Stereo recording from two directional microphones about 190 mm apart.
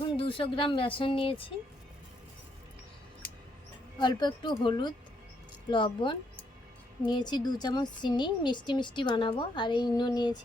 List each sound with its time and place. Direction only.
0.2 s speech: 30° left (ahead or behind)
4.0 s speech: 25° left (ahead or behind)